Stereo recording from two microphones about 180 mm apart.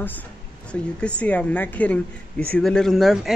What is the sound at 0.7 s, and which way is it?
A woman's voice, 5° left (ahead or behind).